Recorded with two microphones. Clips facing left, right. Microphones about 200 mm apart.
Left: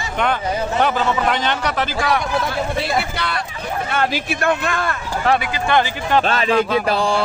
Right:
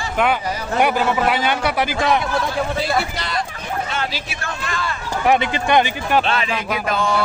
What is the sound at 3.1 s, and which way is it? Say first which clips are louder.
A man's voice: even; 60° left (ahead or behind).